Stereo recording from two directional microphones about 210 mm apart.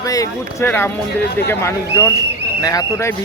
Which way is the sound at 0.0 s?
15° left (ahead or behind).